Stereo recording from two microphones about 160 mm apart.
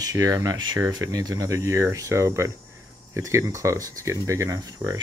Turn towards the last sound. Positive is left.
turn(degrees=-20)  # may be behind; listen again after turning